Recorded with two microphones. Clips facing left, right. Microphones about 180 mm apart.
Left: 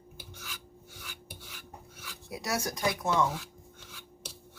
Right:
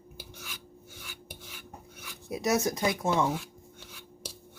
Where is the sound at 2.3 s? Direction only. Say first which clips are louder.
Right 6 dB; 20° right (ahead or behind).